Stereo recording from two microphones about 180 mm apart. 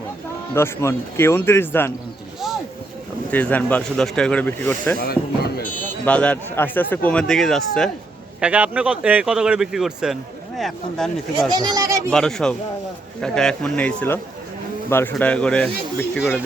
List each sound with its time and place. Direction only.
0.5 s speech: 15° left (ahead or behind)
3.2 s speech: 10° left (ahead or behind)
4.9 s speech: 60° left (ahead or behind)
6.1 s a man's voice: 5° left (ahead or behind)
11.5 s speech: 20° right (ahead or behind)
12.1 s a man's voice: 5° left (ahead or behind)